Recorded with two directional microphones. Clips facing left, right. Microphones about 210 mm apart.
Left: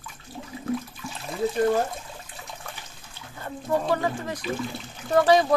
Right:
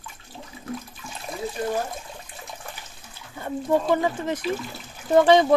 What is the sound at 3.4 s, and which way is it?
Speech, 20° right (ahead or behind).